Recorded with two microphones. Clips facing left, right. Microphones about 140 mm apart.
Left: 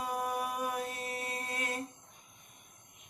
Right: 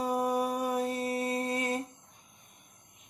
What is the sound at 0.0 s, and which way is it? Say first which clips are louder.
Mantra: right 6 dB; 35° right (ahead or behind).